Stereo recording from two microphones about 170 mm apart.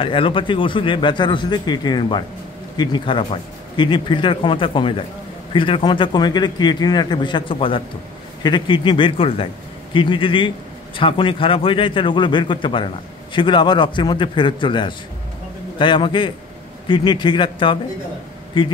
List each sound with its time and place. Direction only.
0.0 s a man's voice: 30° left (ahead or behind)